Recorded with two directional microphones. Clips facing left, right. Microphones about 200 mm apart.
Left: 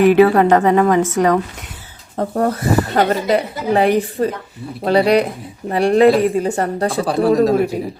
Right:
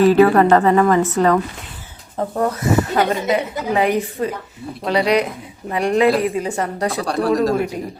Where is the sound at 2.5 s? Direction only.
30° left (ahead or behind).